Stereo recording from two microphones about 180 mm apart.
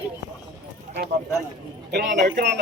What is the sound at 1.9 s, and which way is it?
Speech, 70° right (ahead or behind).